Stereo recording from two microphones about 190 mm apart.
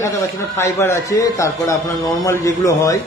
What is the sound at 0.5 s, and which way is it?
A woman's voice, 15° left (ahead or behind).